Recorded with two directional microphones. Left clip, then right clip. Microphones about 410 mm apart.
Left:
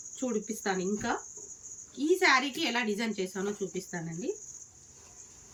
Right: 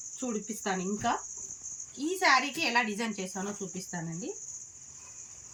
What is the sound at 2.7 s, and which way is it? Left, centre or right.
Speech, centre.